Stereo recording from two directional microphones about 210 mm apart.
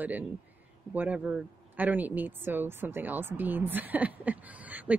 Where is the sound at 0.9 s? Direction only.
5° right (ahead or behind).